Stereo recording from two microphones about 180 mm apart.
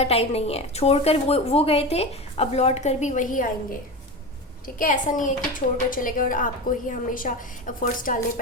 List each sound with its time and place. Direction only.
0.0 s a woman's voice: 35° left (ahead or behind)